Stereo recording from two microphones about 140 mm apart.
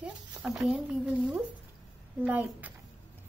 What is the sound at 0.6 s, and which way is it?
Speech, 5° right (ahead or behind).